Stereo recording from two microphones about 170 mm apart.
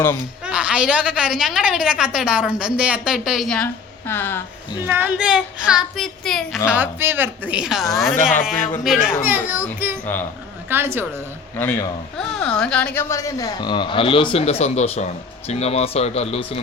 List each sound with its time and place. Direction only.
0.4 s a woman's voice: 5° right (ahead or behind)
4.0 s speech: 10° left (ahead or behind)
4.9 s a woman's voice: 10° right (ahead or behind)
6.7 s a woman's voice: 10° right (ahead or behind)
10.1 s speech: 10° left (ahead or behind)
10.7 s speech: 15° right (ahead or behind)
11.5 s speech: 10° left (ahead or behind); by 16.6 s 35° left (ahead or behind)